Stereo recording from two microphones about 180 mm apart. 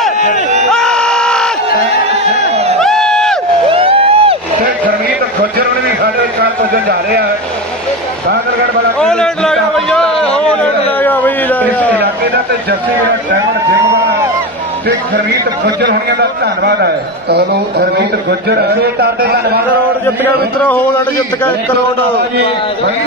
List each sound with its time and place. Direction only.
0.7 s crowd: centre (ahead or behind)
2.8 s crowd: centre (ahead or behind)
3.6 s a sound: 30° right (ahead or behind)
6.7 s a man's voice: 60° right (ahead or behind)
9.0 s a sound: centre (ahead or behind)
15.6 s a man's voice: 65° right (ahead or behind)